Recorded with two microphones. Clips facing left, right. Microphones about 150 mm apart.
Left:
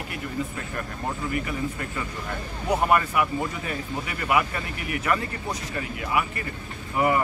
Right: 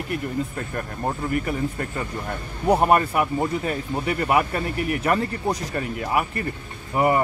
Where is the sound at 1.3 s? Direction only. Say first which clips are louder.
Right 4 dB; 45° right (ahead or behind).